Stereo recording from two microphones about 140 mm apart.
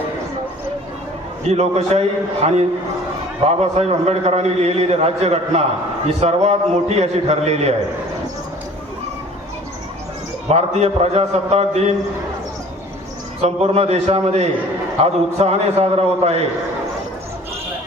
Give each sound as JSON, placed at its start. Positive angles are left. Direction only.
{"t": 1.5, "sound": "a man's voice", "side_deg": -50}
{"t": 10.5, "sound": "a man's voice", "side_deg": -50}
{"t": 13.4, "sound": "a man's voice", "side_deg": -50}